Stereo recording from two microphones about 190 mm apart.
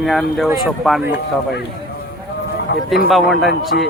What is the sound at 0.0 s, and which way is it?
Speech, centre (ahead or behind).